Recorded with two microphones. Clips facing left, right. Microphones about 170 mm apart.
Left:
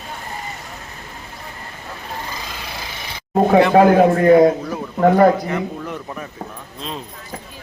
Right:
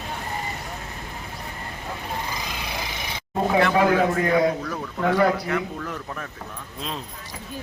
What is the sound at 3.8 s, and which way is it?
A man's voice, 45° left (ahead or behind).